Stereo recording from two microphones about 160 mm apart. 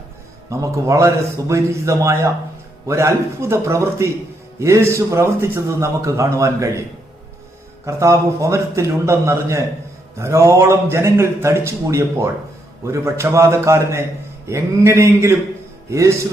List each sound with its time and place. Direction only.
0.5 s a man's voice: 20° right (ahead or behind)
7.9 s a man's voice: 20° right (ahead or behind)